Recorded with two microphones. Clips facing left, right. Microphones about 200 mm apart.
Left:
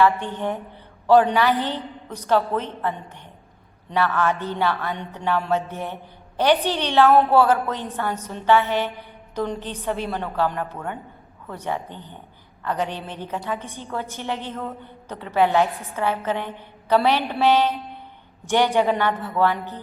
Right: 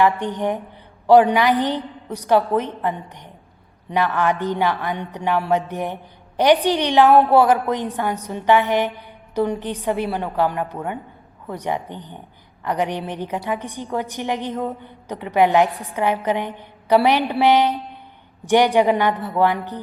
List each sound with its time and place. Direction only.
0.0 s a woman's voice: 15° right (ahead or behind)